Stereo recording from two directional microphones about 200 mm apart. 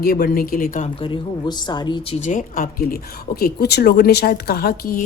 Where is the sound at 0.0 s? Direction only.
50° left (ahead or behind).